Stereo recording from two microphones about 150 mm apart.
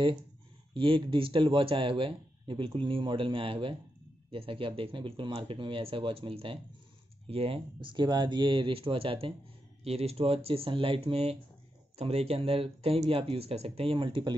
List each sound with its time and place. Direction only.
0.7 s speech: 35° right (ahead or behind)